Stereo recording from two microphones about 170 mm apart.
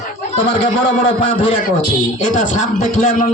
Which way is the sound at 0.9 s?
40° left (ahead or behind).